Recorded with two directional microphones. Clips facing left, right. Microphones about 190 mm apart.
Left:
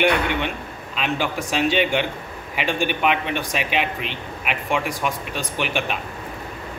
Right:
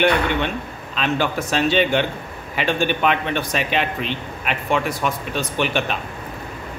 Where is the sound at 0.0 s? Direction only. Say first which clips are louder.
Right 2 dB; 10° left (ahead or behind).